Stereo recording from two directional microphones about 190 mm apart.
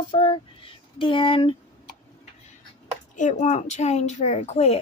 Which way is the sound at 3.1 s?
40° left (ahead or behind).